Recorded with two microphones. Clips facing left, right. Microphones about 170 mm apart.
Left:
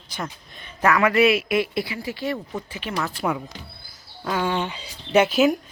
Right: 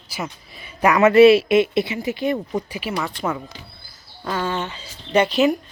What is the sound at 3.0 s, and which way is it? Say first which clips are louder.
Speech: left 1 dB; centre (ahead or behind).